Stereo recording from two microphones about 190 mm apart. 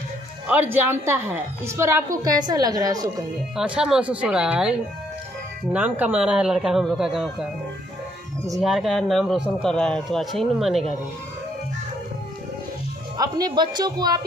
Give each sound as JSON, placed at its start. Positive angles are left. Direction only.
{"t": 0.5, "sound": "a woman's voice", "side_deg": -10}
{"t": 3.5, "sound": "a man's voice", "side_deg": -5}
{"t": 8.5, "sound": "a man's voice", "side_deg": 0}
{"t": 13.2, "sound": "speech", "side_deg": -20}